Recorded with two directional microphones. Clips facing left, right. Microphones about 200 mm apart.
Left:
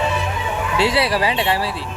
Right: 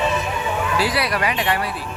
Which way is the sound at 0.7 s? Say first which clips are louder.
Left 6 dB; 25° left (ahead or behind).